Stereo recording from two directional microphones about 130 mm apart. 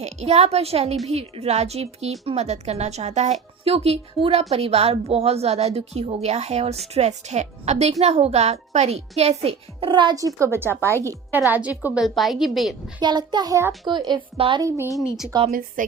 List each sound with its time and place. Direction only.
0.0 s a child's voice: 55° right (ahead or behind); by 10.2 s 40° right (ahead or behind)
10.2 s a woman's voice: 25° right (ahead or behind)
12.0 s a woman's voice: centre (ahead or behind)
13.0 s a child's voice: 35° right (ahead or behind)
13.8 s a child's voice: 35° right (ahead or behind)
14.9 s a woman's voice: 5° right (ahead or behind)